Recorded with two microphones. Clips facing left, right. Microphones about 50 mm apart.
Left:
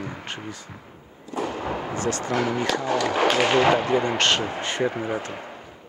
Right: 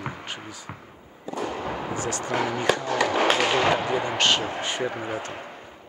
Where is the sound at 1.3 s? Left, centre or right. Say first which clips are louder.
Left 2 dB; centre.